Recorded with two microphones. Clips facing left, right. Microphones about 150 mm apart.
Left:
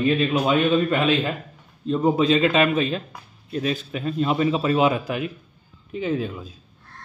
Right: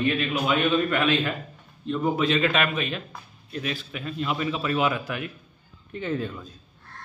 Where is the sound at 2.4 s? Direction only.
20° left (ahead or behind).